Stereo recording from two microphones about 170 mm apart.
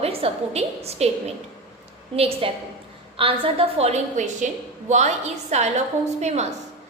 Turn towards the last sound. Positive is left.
turn(degrees=-40)  # may be behind; listen again after turning